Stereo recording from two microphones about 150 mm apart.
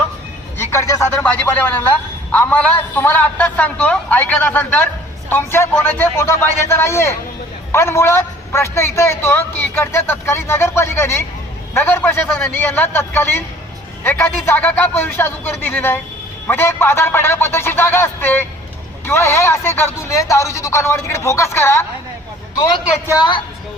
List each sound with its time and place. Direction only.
0.6 s a man's voice: 20° left (ahead or behind)
23.1 s a woman's voice: 30° left (ahead or behind)